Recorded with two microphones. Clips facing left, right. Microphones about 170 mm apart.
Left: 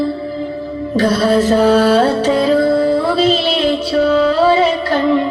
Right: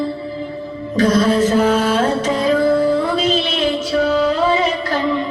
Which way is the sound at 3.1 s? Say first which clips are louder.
Left 4 dB; 35° left (ahead or behind).